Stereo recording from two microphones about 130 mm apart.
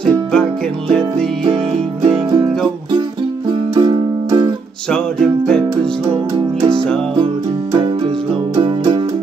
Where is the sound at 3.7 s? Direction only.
35° right (ahead or behind).